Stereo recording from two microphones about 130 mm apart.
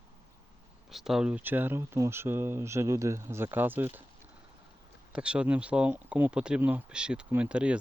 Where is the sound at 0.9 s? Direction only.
Centre (ahead or behind).